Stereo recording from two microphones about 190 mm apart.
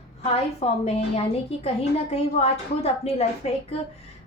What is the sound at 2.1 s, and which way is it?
A woman's voice, 35° left (ahead or behind).